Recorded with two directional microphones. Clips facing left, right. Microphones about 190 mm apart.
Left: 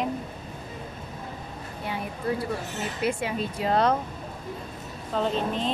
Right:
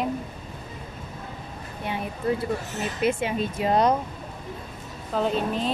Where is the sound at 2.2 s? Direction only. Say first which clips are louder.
Right 3 dB; 20° right (ahead or behind).